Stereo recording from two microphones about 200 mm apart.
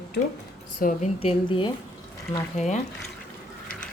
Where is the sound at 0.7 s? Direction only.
35° left (ahead or behind).